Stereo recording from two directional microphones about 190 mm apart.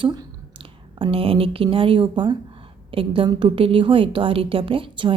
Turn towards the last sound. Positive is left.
turn(degrees=-25)  # may be behind; listen again after turning